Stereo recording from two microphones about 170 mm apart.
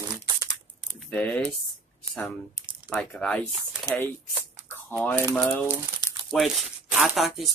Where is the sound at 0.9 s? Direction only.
10° left (ahead or behind).